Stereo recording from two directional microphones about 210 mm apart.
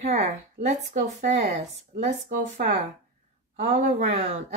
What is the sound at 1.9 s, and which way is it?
Speech, 50° right (ahead or behind).